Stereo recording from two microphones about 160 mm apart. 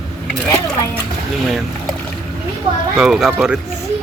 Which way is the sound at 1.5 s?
Centre (ahead or behind).